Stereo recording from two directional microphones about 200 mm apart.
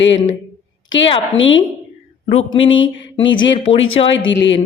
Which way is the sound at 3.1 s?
25° left (ahead or behind).